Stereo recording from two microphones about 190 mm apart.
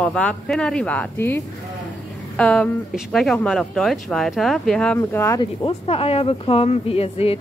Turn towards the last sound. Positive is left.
turn(degrees=30)  # may be behind; listen again after turning